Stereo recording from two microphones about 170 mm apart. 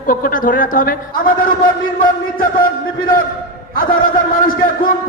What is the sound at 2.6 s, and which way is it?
A man's voice, 55° left (ahead or behind).